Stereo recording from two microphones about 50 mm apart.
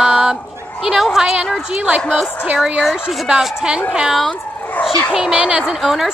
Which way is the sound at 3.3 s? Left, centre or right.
Centre.